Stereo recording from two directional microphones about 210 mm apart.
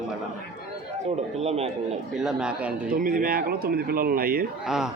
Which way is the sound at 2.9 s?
40° right (ahead or behind).